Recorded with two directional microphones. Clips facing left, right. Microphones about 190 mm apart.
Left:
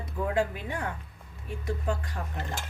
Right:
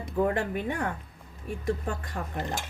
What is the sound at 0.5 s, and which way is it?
A woman's voice, 55° right (ahead or behind).